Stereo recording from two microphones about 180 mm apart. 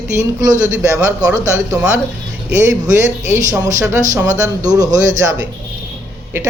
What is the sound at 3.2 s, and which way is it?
Speech, 15° right (ahead or behind).